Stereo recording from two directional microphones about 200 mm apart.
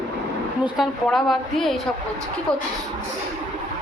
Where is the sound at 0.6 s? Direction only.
Centre (ahead or behind).